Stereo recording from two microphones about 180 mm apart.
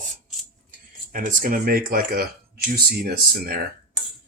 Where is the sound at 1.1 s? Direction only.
50° right (ahead or behind).